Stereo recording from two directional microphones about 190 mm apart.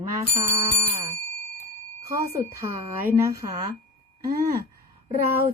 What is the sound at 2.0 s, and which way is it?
A woman's voice, 15° right (ahead or behind).